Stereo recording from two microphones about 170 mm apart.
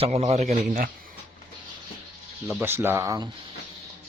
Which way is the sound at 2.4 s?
10° right (ahead or behind).